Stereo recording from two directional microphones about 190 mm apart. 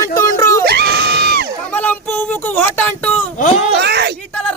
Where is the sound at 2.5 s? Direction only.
10° left (ahead or behind).